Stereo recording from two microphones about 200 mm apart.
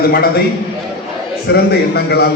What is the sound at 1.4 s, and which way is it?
Speech, 50° left (ahead or behind).